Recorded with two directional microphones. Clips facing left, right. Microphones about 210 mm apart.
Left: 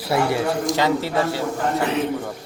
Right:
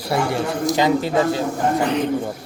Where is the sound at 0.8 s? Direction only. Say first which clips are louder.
Right 5 dB; 15° right (ahead or behind).